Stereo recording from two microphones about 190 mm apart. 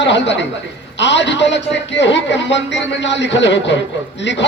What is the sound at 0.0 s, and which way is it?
Speech, 70° left (ahead or behind).